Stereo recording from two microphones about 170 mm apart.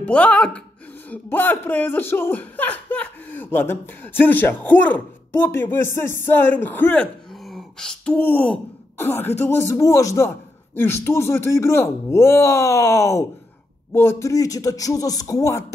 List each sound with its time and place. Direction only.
0.0 s speech: 5° left (ahead or behind)